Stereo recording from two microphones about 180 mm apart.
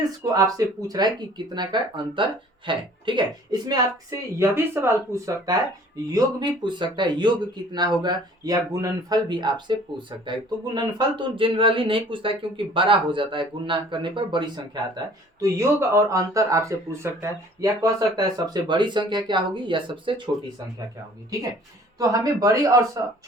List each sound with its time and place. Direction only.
0.2 s a man's voice: 20° right (ahead or behind)
4.4 s a man's voice: 15° right (ahead or behind)
21.9 s a man's voice: 20° right (ahead or behind)